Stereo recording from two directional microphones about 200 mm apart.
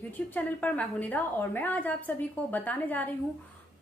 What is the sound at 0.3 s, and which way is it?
A woman's voice, 10° left (ahead or behind).